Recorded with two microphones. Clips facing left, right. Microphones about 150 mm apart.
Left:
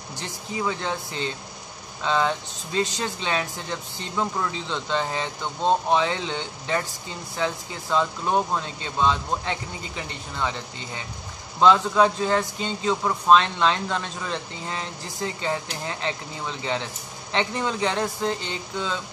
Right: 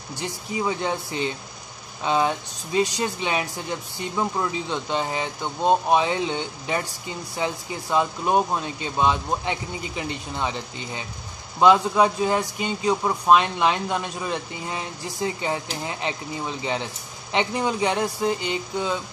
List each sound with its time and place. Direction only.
0.2 s speech: 15° right (ahead or behind)